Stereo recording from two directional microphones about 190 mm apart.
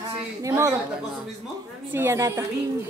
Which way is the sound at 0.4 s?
15° right (ahead or behind).